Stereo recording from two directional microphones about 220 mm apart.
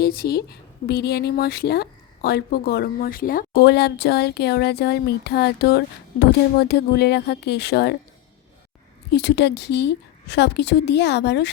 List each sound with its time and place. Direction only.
0.0 s speech: 45° left (ahead or behind)
9.1 s speech: 50° left (ahead or behind)